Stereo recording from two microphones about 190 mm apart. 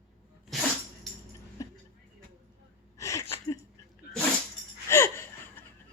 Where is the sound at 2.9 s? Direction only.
15° left (ahead or behind).